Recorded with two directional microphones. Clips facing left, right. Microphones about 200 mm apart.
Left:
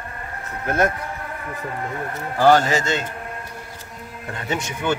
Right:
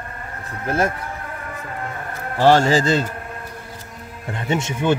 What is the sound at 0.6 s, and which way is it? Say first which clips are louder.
Speech: even; 30° right (ahead or behind).